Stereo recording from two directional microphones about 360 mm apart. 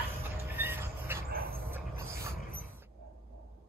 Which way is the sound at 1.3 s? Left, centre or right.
Right.